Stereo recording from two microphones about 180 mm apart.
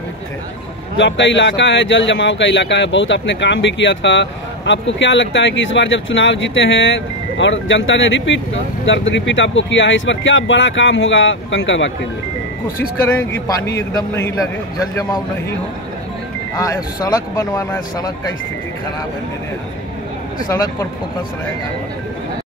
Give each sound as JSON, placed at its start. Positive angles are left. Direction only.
{"t": 0.9, "sound": "speech", "side_deg": 85}
{"t": 13.3, "sound": "a man's voice", "side_deg": 20}
{"t": 16.5, "sound": "speech", "side_deg": 20}
{"t": 20.4, "sound": "speech", "side_deg": 20}